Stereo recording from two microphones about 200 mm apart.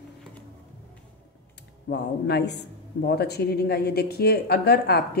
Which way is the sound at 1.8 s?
55° left (ahead or behind).